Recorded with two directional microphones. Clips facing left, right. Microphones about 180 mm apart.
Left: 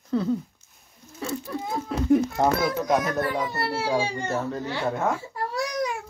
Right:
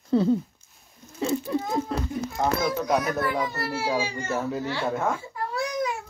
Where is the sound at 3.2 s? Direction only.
35° left (ahead or behind).